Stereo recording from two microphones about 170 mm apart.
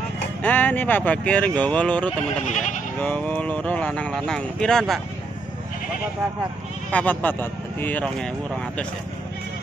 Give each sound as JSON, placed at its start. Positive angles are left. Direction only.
{"t": 0.4, "sound": "speech", "side_deg": 10}
{"t": 2.4, "sound": "speech", "side_deg": 45}
{"t": 3.0, "sound": "speech", "side_deg": 10}
{"t": 6.9, "sound": "speech", "side_deg": 10}